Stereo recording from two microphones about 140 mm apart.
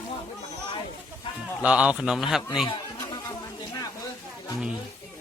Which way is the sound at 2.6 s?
30° left (ahead or behind).